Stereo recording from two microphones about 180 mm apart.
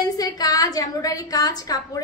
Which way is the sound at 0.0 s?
20° left (ahead or behind).